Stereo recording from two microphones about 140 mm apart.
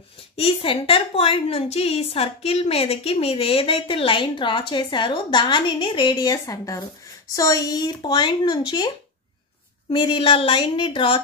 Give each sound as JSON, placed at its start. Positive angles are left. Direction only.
{"t": 0.4, "sound": "a woman's voice", "side_deg": 40}